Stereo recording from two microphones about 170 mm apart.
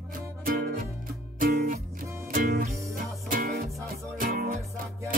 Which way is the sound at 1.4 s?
60° right (ahead or behind).